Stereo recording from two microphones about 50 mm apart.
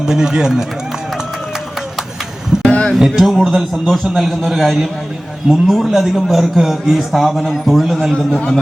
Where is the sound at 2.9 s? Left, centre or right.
Centre.